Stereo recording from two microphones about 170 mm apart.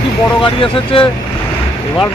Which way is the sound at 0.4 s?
30° left (ahead or behind).